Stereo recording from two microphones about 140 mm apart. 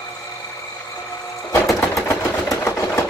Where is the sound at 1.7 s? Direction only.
20° left (ahead or behind).